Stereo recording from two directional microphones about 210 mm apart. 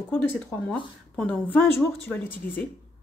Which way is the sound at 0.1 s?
5° left (ahead or behind).